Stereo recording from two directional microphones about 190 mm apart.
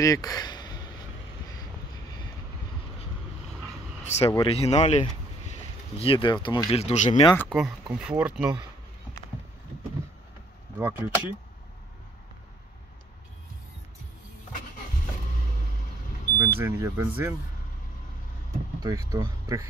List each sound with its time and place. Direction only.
0.0 s a sound: 20° left (ahead or behind)
4.0 s a sound: 35° left (ahead or behind)
4.4 s speech: 30° left (ahead or behind)
6.7 s speech: 35° left (ahead or behind)
7.3 s speech: centre (ahead or behind)
10.8 s speech: 10° right (ahead or behind)
16.3 s speech: 15° right (ahead or behind)
18.8 s speech: 20° right (ahead or behind)